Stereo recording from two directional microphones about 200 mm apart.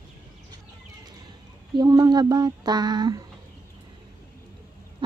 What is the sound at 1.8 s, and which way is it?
A woman's voice, 20° right (ahead or behind).